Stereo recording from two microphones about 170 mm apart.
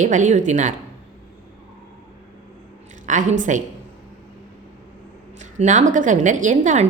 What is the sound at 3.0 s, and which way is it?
Speech, 45° right (ahead or behind).